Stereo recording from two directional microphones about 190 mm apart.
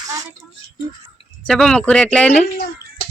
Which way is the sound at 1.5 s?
5° left (ahead or behind).